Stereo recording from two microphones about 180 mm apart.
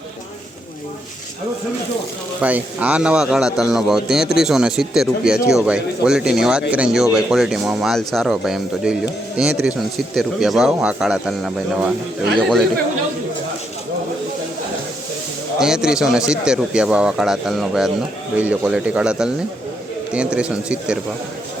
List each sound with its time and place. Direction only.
2.4 s speech: 10° right (ahead or behind)
15.5 s a man's voice: 5° right (ahead or behind)